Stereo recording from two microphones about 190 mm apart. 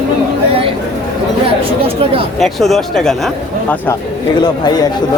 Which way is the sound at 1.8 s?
30° right (ahead or behind).